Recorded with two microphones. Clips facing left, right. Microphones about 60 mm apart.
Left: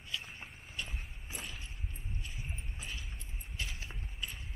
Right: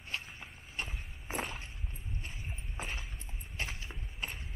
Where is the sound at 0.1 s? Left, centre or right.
Right.